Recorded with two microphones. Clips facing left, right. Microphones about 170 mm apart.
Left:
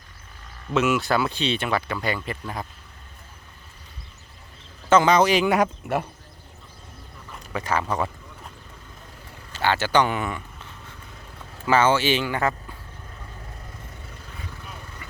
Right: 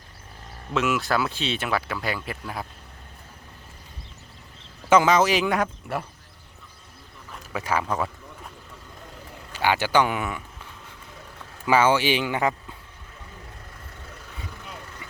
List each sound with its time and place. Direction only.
0.7 s speech: centre (ahead or behind)
4.9 s speech: 5° right (ahead or behind)
5.5 s speech: 20° left (ahead or behind)
7.5 s speech: 10° right (ahead or behind)
9.5 s speech: 10° right (ahead or behind)